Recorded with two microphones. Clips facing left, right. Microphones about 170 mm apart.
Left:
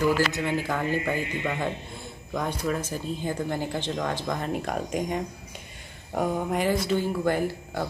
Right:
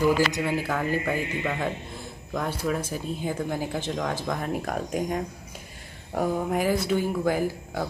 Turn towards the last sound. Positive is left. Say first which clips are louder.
# even
turn(degrees=-5)  # may be behind; listen again after turning